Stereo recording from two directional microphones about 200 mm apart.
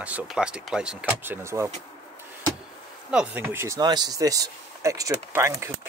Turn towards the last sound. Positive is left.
turn(degrees=-15)  # may be behind; listen again after turning